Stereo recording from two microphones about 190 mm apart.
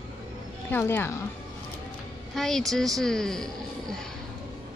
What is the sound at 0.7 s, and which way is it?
Speech, 10° left (ahead or behind).